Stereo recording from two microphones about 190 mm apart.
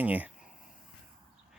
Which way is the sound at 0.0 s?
10° right (ahead or behind).